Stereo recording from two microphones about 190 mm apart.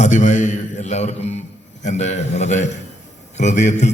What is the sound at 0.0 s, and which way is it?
A man's voice, 40° left (ahead or behind).